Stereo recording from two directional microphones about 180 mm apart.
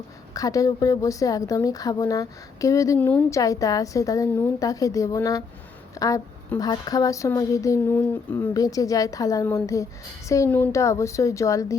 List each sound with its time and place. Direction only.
0.3 s a woman's voice: 20° left (ahead or behind)